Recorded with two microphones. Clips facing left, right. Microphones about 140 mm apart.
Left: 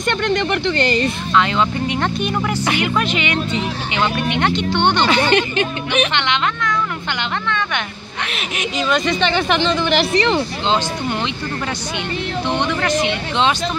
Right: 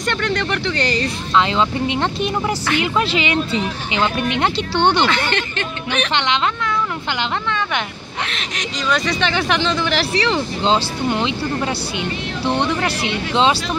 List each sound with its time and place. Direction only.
0.0 s speech: centre (ahead or behind)
1.3 s speech: 25° right (ahead or behind)
5.0 s speech: 15° left (ahead or behind)
6.1 s speech: 30° right (ahead or behind)
8.3 s speech: 10° left (ahead or behind)
12.5 s speech: 35° right (ahead or behind)